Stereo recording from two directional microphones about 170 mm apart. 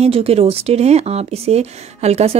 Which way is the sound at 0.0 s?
35° right (ahead or behind).